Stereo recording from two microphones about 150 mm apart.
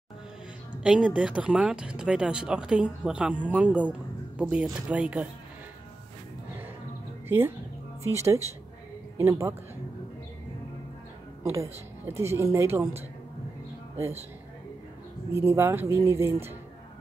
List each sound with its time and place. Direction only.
0.8 s speech: 5° right (ahead or behind)
7.2 s speech: 15° right (ahead or behind)
9.2 s speech: 15° right (ahead or behind)
11.4 s speech: 20° right (ahead or behind)
13.9 s speech: 15° right (ahead or behind)
15.3 s speech: 15° right (ahead or behind)